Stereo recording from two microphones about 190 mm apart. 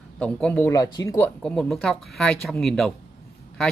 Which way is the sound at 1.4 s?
5° left (ahead or behind).